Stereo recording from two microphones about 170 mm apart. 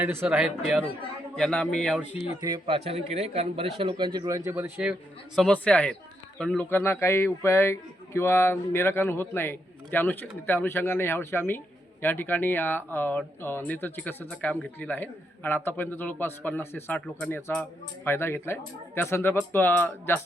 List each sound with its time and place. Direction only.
0.0 s a man's voice: 10° right (ahead or behind)
2.4 s a man's voice: 25° right (ahead or behind)
2.7 s a man's voice: 35° right (ahead or behind); by 4.9 s 10° right (ahead or behind)
5.4 s a man's voice: 5° left (ahead or behind)